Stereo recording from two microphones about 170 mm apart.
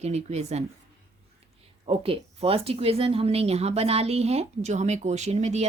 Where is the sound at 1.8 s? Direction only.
35° right (ahead or behind).